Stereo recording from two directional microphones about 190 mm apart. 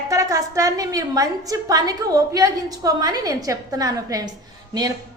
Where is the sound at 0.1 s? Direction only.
15° right (ahead or behind).